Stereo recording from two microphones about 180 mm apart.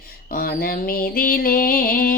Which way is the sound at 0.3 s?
55° left (ahead or behind).